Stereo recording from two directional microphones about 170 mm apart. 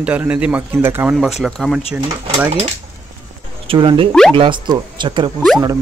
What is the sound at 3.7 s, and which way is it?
Speech, 30° right (ahead or behind).